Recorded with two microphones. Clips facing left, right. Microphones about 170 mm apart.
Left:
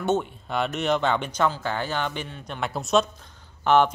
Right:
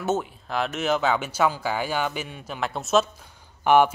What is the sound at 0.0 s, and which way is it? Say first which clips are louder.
Speech: left 1 dB; 5° right (ahead or behind).